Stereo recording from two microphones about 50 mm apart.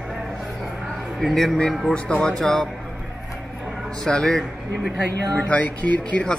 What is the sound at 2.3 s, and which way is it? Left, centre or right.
Speech, centre.